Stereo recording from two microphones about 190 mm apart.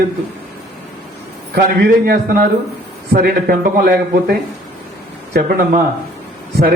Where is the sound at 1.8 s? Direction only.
55° right (ahead or behind).